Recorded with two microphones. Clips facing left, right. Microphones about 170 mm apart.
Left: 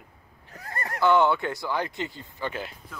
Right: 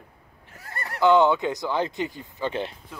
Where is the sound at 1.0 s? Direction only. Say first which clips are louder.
Right 3 dB; 15° right (ahead or behind).